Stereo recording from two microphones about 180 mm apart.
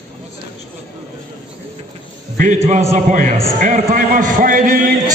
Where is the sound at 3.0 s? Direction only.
45° right (ahead or behind).